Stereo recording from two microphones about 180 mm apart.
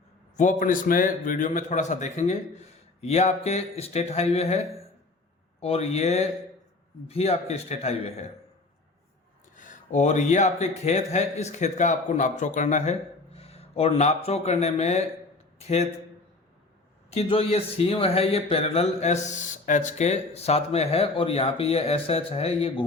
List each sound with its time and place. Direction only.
0.3 s a man's voice: 45° left (ahead or behind)
9.6 s a man's voice: 45° left (ahead or behind)
17.1 s speech: 35° left (ahead or behind)